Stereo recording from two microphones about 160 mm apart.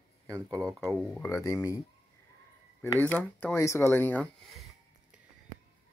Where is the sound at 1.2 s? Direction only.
20° left (ahead or behind).